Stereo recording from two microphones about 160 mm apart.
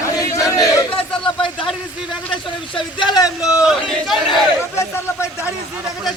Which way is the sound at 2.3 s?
30° left (ahead or behind).